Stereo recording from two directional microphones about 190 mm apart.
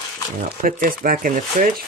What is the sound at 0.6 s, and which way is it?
Speech, 45° right (ahead or behind).